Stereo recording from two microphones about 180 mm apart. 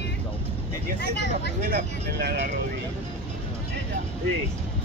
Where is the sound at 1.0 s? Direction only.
70° left (ahead or behind).